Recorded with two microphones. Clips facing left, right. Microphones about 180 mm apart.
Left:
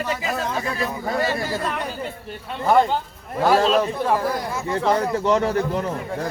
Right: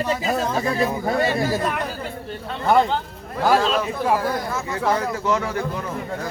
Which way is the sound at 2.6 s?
5° left (ahead or behind).